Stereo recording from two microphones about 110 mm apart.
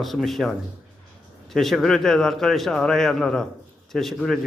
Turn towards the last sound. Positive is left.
turn(degrees=5)  # may be behind; listen again after turning